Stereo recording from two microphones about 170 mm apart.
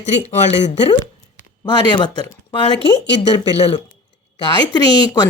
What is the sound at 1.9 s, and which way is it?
Speech, 25° left (ahead or behind).